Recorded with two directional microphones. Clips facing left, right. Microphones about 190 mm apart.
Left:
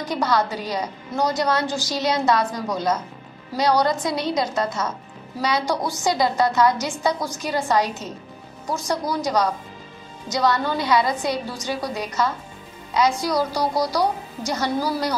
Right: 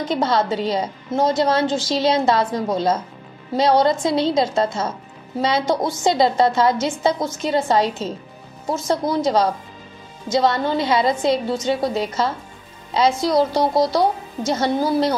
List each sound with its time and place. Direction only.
0.0 s a woman's voice: 25° right (ahead or behind)